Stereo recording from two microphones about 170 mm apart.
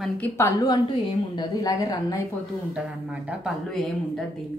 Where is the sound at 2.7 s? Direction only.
5° right (ahead or behind).